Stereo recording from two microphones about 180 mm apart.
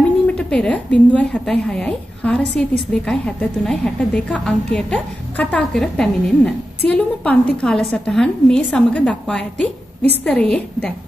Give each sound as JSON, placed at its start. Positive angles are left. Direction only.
{"t": 0.3, "sound": "a woman's voice", "side_deg": 5}